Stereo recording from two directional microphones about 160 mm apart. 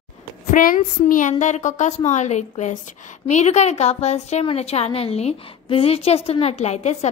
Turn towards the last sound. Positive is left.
turn(degrees=45)  # may be behind; listen again after turning